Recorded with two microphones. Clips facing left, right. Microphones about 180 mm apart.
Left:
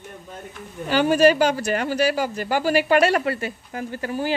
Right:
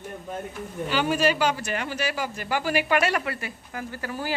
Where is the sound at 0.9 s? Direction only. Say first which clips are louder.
Left 7 dB; 40° left (ahead or behind); by 4.3 s 20° left (ahead or behind).